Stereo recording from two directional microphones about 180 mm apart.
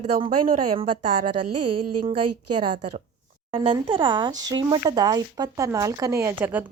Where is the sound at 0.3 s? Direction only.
45° right (ahead or behind).